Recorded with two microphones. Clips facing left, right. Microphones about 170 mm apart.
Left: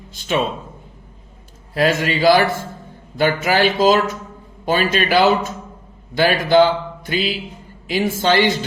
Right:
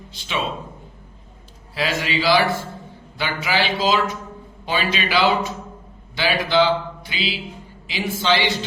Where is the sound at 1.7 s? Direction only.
50° left (ahead or behind).